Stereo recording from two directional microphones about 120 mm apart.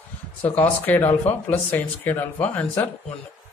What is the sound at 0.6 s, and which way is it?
A man's voice, 15° left (ahead or behind).